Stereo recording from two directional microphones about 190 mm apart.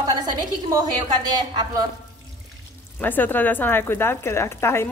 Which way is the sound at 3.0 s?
10° left (ahead or behind).